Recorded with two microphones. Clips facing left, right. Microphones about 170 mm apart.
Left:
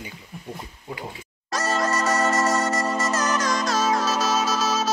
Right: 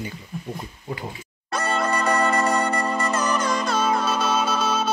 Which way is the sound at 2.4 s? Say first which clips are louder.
Even; 5° left (ahead or behind).